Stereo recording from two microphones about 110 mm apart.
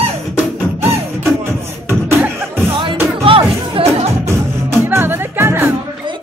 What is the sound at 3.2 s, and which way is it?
Music, 60° right (ahead or behind).